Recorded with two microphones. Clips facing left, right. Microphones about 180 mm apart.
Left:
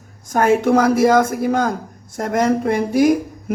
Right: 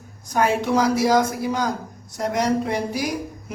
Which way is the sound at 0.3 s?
50° left (ahead or behind).